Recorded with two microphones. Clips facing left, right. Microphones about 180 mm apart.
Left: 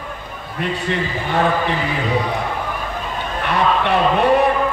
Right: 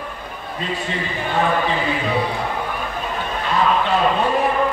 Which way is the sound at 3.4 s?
65° left (ahead or behind).